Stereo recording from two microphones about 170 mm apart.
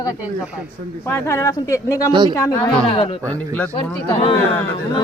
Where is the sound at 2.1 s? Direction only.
25° right (ahead or behind).